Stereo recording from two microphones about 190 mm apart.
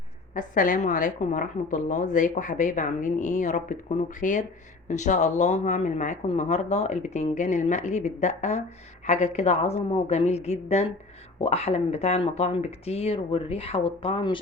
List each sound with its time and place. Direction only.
0.3 s a woman's voice: 45° left (ahead or behind); by 14.3 s 25° left (ahead or behind)